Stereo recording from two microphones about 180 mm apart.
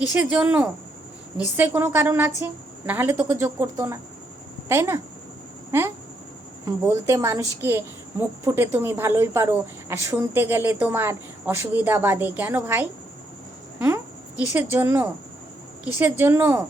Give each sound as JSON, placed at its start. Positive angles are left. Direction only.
{"t": 0.1, "sound": "a woman's voice", "side_deg": -10}